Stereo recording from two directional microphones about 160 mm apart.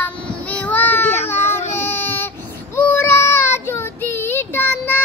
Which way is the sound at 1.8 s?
15° left (ahead or behind).